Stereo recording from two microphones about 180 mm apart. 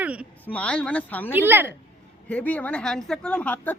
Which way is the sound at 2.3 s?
10° left (ahead or behind).